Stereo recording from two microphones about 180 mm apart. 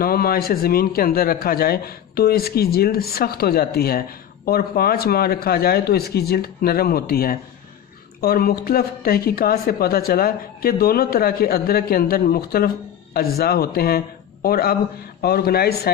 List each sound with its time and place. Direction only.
0.0 s speech: 55° left (ahead or behind)